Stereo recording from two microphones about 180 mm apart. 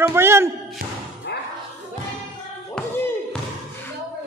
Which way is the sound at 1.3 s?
70° left (ahead or behind).